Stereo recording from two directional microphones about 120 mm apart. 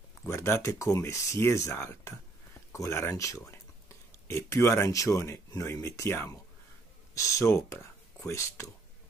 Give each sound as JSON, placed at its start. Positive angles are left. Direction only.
{"t": 0.3, "sound": "speech", "side_deg": 20}